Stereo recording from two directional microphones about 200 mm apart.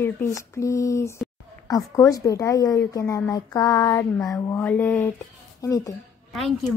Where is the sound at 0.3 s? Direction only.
15° left (ahead or behind).